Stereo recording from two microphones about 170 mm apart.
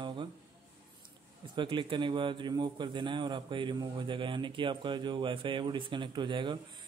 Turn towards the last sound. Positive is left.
turn(degrees=-30)  # may be behind; listen again after turning